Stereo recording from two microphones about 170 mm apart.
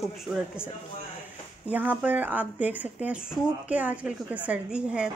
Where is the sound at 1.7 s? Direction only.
10° right (ahead or behind).